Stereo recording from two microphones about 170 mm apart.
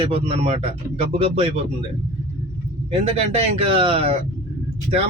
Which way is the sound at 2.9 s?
35° right (ahead or behind).